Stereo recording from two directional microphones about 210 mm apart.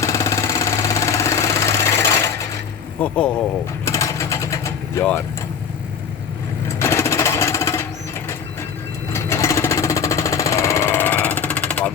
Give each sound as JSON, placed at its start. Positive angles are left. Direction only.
{"t": 0.0, "sound": "a sound", "side_deg": 15}
{"t": 3.0, "sound": "speech", "side_deg": 5}
{"t": 3.8, "sound": "vehicle", "side_deg": 15}
{"t": 6.7, "sound": "jackhammer", "side_deg": 15}
{"t": 9.1, "sound": "jackhammer", "side_deg": 15}